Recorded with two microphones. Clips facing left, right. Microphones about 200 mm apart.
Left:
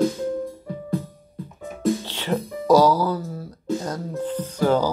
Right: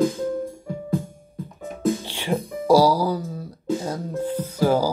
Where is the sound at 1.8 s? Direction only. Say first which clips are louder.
Left 1 dB; 15° right (ahead or behind).